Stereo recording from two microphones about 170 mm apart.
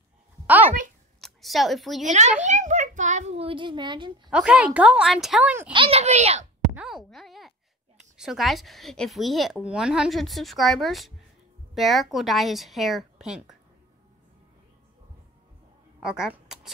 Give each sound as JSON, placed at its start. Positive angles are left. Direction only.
{"t": 1.2, "sound": "a sound", "side_deg": 0}
{"t": 2.0, "sound": "a child's voice", "side_deg": -45}
{"t": 4.3, "sound": "a woman's voice", "side_deg": -5}
{"t": 5.7, "sound": "a child's voice", "side_deg": -30}
{"t": 6.7, "sound": "plop", "side_deg": -5}
{"t": 8.2, "sound": "a woman's voice", "side_deg": 0}
{"t": 16.0, "sound": "speech", "side_deg": -5}